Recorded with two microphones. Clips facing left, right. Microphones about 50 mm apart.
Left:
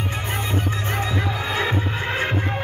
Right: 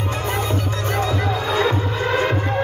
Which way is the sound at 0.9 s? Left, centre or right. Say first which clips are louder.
Right 5 dB; left.